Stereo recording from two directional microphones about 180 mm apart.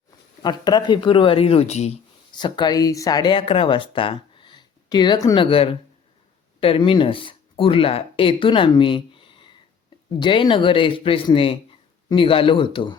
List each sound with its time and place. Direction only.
0.4 s speech: 25° left (ahead or behind)
2.3 s speech: 25° left (ahead or behind)